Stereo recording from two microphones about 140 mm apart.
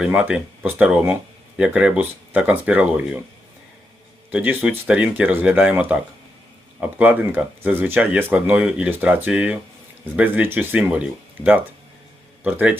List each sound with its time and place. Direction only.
0.0 s speech: 10° right (ahead or behind)
4.3 s speech: 10° right (ahead or behind)
12.4 s speech: 10° right (ahead or behind)